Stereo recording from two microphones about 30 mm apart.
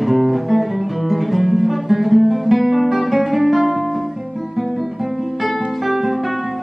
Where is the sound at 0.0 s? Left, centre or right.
Centre.